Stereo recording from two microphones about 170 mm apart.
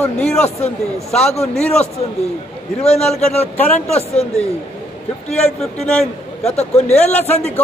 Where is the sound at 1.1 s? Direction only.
40° left (ahead or behind).